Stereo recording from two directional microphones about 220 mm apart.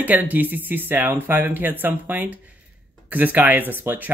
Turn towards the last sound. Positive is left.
turn(degrees=-10)  # may be behind; listen again after turning